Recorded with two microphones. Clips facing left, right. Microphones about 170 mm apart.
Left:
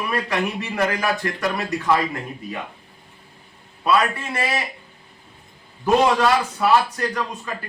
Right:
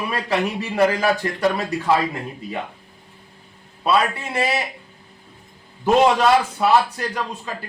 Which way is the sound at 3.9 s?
25° right (ahead or behind).